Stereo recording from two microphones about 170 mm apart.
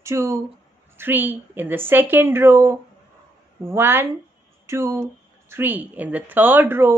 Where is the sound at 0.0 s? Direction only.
15° right (ahead or behind).